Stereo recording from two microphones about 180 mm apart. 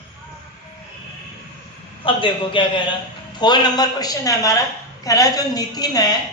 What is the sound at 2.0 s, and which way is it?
A man's voice, 30° left (ahead or behind).